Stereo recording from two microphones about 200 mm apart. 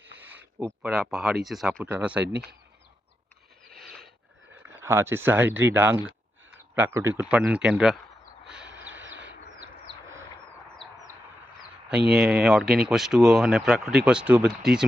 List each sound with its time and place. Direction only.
0.2 s speech: 10° right (ahead or behind)
2.2 s speech: 55° right (ahead or behind)
3.8 s a sound: centre (ahead or behind)
4.7 s speech: 10° right (ahead or behind)
8.4 s a sound: 60° right (ahead or behind)
8.9 s bird: 65° right (ahead or behind)
11.9 s speech: 5° right (ahead or behind)